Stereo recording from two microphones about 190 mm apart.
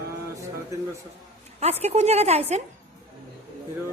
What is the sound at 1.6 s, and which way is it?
A woman's voice, 35° right (ahead or behind).